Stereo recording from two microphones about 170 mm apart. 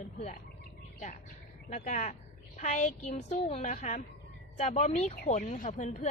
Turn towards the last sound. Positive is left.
turn(degrees=45)  # may be behind; listen again after turning